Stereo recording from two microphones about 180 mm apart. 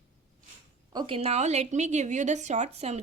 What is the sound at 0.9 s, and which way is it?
A woman's voice, 25° right (ahead or behind).